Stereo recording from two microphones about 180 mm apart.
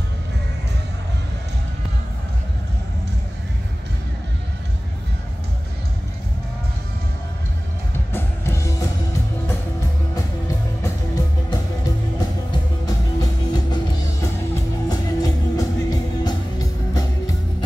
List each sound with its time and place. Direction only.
8.1 s music: 15° left (ahead or behind)
10.8 s music: 20° left (ahead or behind)
12.8 s music: 20° left (ahead or behind)